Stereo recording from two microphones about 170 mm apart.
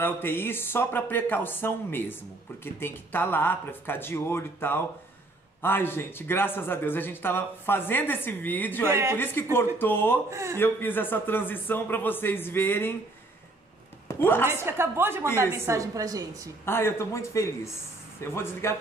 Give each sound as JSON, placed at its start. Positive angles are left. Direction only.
{"t": 0.0, "sound": "speech", "side_deg": 15}
{"t": 8.8, "sound": "a woman's voice", "side_deg": -15}
{"t": 9.2, "sound": "speech", "side_deg": 15}
{"t": 10.3, "sound": "a woman's voice", "side_deg": -15}
{"t": 10.6, "sound": "speech", "side_deg": 10}
{"t": 14.0, "sound": "a sound", "side_deg": 15}
{"t": 14.5, "sound": "a woman's voice", "side_deg": -15}
{"t": 15.2, "sound": "speech", "side_deg": 15}
{"t": 15.6, "sound": "a woman's voice", "side_deg": -15}
{"t": 16.6, "sound": "speech", "side_deg": 15}